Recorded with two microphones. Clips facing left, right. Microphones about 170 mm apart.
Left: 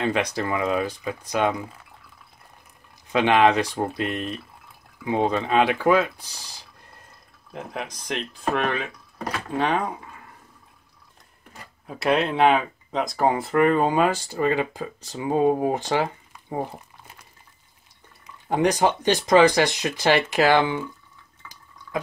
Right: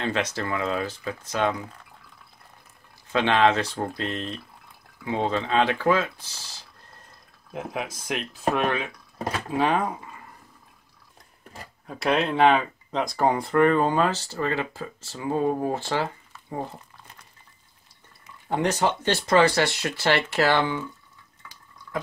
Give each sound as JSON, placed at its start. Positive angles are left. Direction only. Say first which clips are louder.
{"t": 0.0, "sound": "speech", "louder": "left 3 dB", "side_deg": 15}
{"t": 3.1, "sound": "speech", "louder": "left 2 dB", "side_deg": 15}
{"t": 7.5, "sound": "speech", "louder": "right 2 dB", "side_deg": -5}
{"t": 11.9, "sound": "speech", "louder": "left 2 dB", "side_deg": 0}
{"t": 18.5, "sound": "speech", "louder": "left 3 dB", "side_deg": 15}